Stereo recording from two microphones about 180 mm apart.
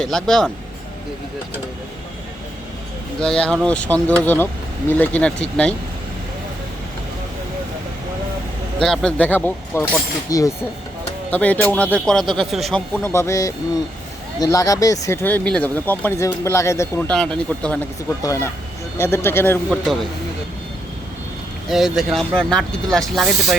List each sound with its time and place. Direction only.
0.0 s speech: 5° left (ahead or behind)
3.2 s speech: 5° left (ahead or behind)
8.8 s speech: centre (ahead or behind)
13.0 s speech: 15° left (ahead or behind)
18.2 s speech: 20° left (ahead or behind)
21.7 s speech: centre (ahead or behind)